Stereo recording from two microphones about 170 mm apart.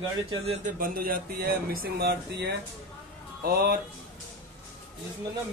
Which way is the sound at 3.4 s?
65° right (ahead or behind).